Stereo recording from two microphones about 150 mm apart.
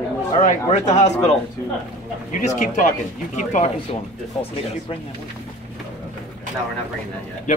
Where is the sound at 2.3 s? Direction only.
55° left (ahead or behind).